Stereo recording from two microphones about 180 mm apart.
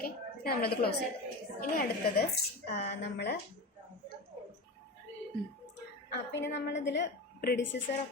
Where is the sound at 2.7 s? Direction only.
65° left (ahead or behind).